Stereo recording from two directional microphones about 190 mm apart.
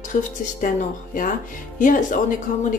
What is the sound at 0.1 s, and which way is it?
Speech, 45° left (ahead or behind).